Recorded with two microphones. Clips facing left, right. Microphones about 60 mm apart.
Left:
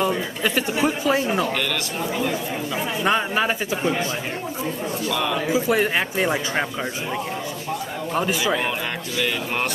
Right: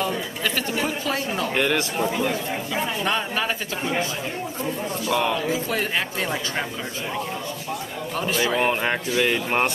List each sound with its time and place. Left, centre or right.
0.0 s speech: centre
2.0 s a man's voice: centre
3.0 s speech: centre
5.0 s speech: right
5.3 s speech: centre
8.5 s speech: right